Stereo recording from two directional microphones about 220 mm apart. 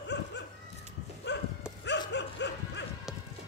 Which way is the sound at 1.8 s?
50° left (ahead or behind).